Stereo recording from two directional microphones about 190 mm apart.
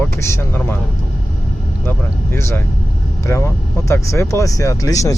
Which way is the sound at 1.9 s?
15° left (ahead or behind).